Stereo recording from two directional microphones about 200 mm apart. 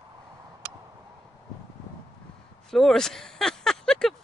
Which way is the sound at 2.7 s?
Centre (ahead or behind).